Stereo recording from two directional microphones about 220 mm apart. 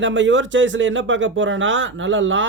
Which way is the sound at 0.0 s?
55° right (ahead or behind).